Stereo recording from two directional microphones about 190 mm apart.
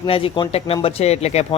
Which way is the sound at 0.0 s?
25° left (ahead or behind).